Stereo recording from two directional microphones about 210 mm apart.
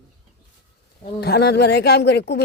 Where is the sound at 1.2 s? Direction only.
50° left (ahead or behind).